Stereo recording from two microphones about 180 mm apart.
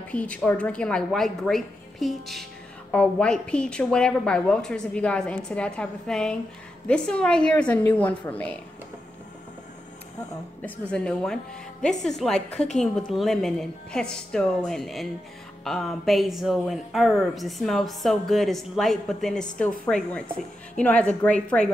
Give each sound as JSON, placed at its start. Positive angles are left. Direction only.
{"t": 0.1, "sound": "a woman's voice", "side_deg": 5}
{"t": 10.6, "sound": "a woman's voice", "side_deg": 5}